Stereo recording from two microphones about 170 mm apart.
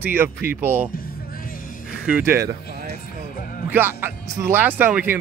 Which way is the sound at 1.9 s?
5° right (ahead or behind).